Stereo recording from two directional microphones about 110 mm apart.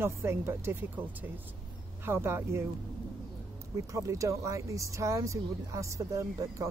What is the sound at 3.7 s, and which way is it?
Speech, 30° right (ahead or behind).